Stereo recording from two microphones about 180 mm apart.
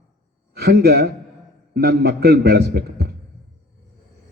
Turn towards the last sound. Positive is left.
turn(degrees=-60)  # may be behind; listen again after turning